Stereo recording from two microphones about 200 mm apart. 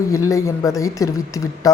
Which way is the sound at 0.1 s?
15° left (ahead or behind).